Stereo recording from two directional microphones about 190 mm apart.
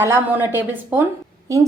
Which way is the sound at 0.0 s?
10° right (ahead or behind).